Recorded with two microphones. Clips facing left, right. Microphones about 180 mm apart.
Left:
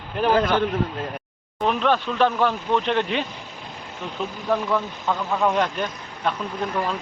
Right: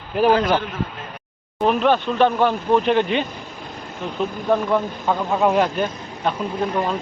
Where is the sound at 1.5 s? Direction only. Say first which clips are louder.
Right 4 dB; 5° right (ahead or behind).